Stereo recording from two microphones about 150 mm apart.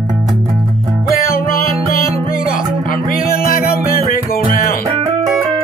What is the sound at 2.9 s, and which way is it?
Music, 70° left (ahead or behind).